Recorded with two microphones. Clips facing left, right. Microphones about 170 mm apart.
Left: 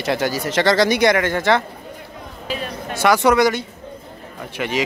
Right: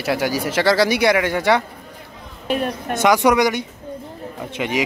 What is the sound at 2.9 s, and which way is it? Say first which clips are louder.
Speech: even; 15° right (ahead or behind).